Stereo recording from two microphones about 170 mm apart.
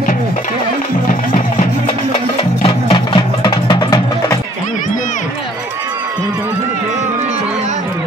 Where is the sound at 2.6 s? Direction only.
30° left (ahead or behind).